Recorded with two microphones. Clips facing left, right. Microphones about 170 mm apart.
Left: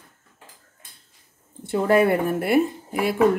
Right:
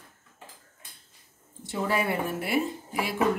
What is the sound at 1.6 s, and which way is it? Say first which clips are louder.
Speech: left 10 dB; 55° left (ahead or behind).